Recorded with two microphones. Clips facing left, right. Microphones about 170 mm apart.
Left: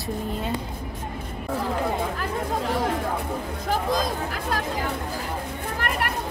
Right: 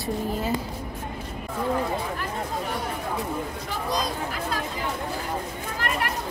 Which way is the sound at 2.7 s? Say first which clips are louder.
Left 6 dB; 90° left.